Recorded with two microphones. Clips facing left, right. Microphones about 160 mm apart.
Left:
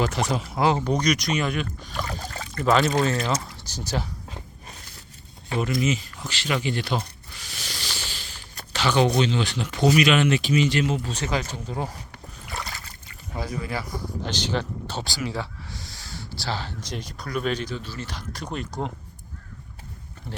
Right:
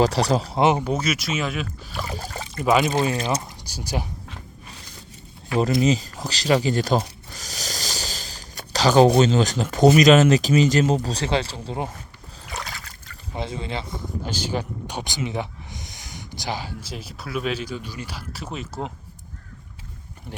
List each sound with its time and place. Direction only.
0.0 s speech: 35° right (ahead or behind)
0.6 s speech: 20° right (ahead or behind)
0.9 s speech: 5° right (ahead or behind)
5.5 s speech: 35° right (ahead or behind)
7.3 s a sound: 40° right (ahead or behind)
9.1 s speech: 40° right (ahead or behind)
12.5 s splash: centre (ahead or behind)
13.3 s speech: 25° right (ahead or behind)
14.3 s speech: 10° right (ahead or behind)